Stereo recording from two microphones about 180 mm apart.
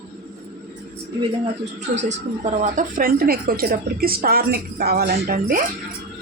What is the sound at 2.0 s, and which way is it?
Speech, 40° right (ahead or behind).